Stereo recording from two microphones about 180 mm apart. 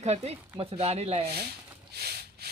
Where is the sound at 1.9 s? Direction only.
65° right (ahead or behind).